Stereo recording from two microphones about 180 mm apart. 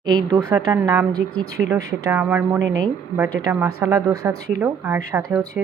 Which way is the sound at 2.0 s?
10° right (ahead or behind).